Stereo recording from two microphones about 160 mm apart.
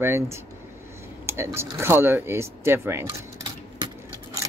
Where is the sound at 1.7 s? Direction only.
15° right (ahead or behind).